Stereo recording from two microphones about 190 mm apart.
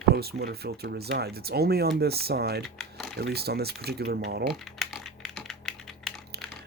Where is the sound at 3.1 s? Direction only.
60° right (ahead or behind).